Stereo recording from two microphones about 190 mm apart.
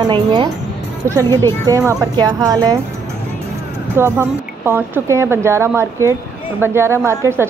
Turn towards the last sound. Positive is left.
turn(degrees=-15)  # may be behind; listen again after turning